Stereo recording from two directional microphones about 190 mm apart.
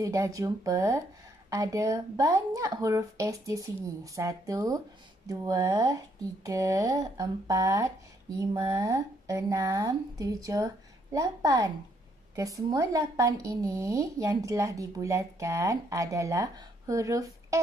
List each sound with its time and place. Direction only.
0.0 s speech: 15° right (ahead or behind)